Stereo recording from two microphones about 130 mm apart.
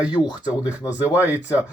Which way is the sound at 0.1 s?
35° left (ahead or behind).